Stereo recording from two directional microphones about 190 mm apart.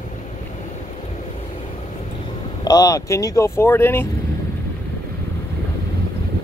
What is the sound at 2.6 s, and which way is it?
Speech, 20° left (ahead or behind).